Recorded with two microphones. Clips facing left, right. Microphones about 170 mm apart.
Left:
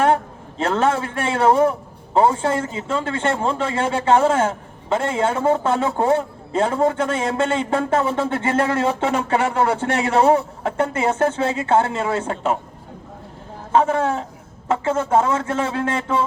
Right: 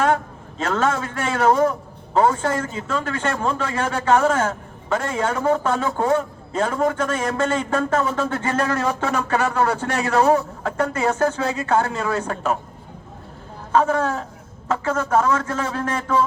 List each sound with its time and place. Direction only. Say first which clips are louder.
0.6 s speech: left 2 dB; 30° left (ahead or behind)
13.7 s speech: left 1 dB; 25° left (ahead or behind)